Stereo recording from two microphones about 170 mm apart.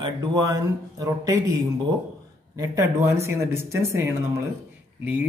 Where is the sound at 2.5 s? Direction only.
20° right (ahead or behind).